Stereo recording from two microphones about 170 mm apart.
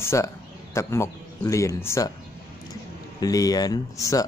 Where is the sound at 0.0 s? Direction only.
15° left (ahead or behind).